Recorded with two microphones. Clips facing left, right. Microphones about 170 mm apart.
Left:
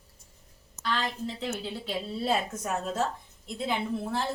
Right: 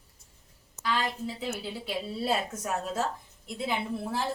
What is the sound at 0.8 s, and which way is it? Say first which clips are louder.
A woman's voice: right 1 dB; 10° right (ahead or behind).